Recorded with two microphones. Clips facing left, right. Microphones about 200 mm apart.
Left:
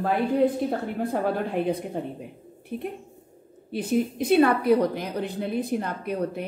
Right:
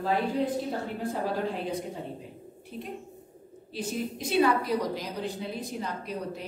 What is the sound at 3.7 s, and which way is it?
A woman's voice, 60° left (ahead or behind).